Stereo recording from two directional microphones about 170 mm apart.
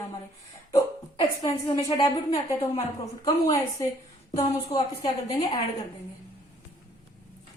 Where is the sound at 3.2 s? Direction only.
20° left (ahead or behind).